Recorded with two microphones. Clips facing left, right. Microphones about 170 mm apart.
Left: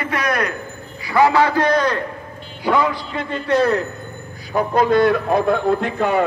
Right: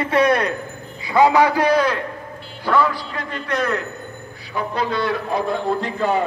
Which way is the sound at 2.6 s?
15° left (ahead or behind).